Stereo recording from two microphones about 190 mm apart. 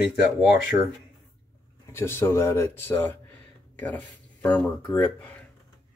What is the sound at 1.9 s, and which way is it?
Speech, 15° left (ahead or behind).